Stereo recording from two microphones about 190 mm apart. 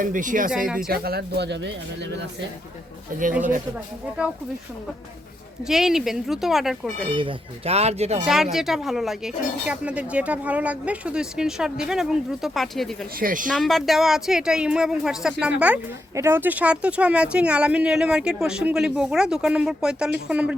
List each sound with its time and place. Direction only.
0.0 s speech: 45° right (ahead or behind); by 1.7 s 65° right (ahead or behind)
3.1 s speech: 45° right (ahead or behind)
5.6 s speech: centre (ahead or behind)
7.2 s speech: 30° right (ahead or behind)
8.3 s speech: centre (ahead or behind)
13.1 s speech: 45° right (ahead or behind)
13.5 s speech: centre (ahead or behind)